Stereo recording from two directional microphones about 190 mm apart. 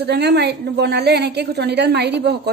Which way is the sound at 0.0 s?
60° right (ahead or behind).